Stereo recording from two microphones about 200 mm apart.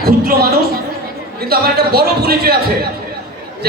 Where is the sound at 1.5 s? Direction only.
50° right (ahead or behind).